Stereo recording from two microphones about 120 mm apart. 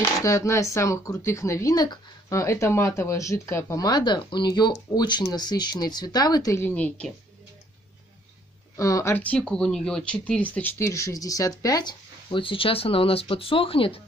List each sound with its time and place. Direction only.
0.2 s speech: 25° left (ahead or behind)
6.6 s speech: 10° left (ahead or behind)
8.7 s speech: 25° left (ahead or behind)
9.2 s speech: 10° left (ahead or behind)
10.8 s speech: 25° left (ahead or behind); by 14.0 s 50° left (ahead or behind)